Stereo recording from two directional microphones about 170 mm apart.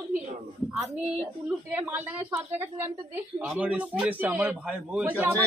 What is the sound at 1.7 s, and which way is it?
A man's voice, 10° right (ahead or behind).